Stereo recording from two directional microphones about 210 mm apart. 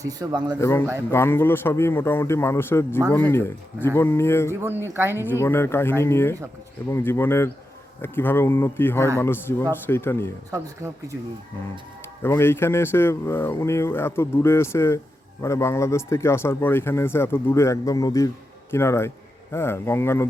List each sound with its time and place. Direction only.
0.0 s speech: 15° right (ahead or behind)
0.6 s speech: 10° left (ahead or behind)
4.9 s speech: 10° right (ahead or behind)
5.2 s speech: 10° left (ahead or behind)
12.2 s speech: 10° left (ahead or behind)